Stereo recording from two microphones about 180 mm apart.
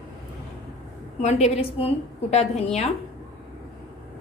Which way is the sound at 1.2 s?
35° left (ahead or behind).